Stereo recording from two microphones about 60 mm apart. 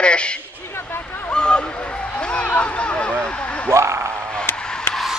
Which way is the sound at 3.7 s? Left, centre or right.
Right.